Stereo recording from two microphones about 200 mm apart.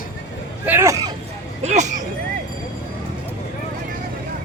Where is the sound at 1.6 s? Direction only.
35° right (ahead or behind).